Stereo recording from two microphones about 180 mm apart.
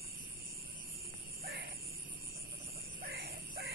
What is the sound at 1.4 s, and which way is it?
Vehicle, 60° right (ahead or behind).